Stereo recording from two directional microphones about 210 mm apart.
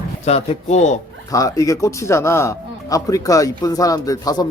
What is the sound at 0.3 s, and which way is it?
Speech, 30° left (ahead or behind).